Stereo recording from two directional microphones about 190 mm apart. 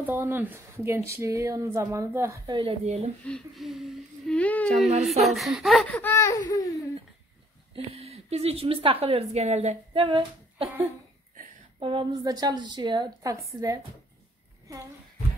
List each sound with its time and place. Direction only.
0.0 s speech: 10° right (ahead or behind); by 3.1 s 35° right (ahead or behind)
3.3 s speech: centre (ahead or behind); by 6.8 s 20° left (ahead or behind)
7.7 s a woman's voice: 30° right (ahead or behind)
11.8 s a woman's voice: 25° right (ahead or behind)